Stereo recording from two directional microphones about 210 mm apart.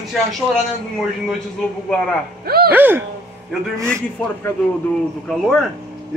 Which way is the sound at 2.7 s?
10° right (ahead or behind).